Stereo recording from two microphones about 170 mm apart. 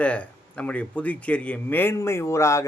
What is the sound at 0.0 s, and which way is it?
Speech, 10° left (ahead or behind).